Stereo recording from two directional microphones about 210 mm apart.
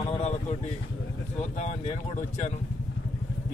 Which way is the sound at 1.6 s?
35° left (ahead or behind).